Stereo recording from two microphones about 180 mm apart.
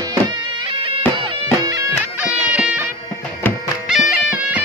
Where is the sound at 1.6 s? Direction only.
20° right (ahead or behind).